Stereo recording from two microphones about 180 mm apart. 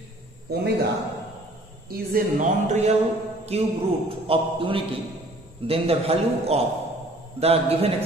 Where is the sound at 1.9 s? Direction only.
50° right (ahead or behind).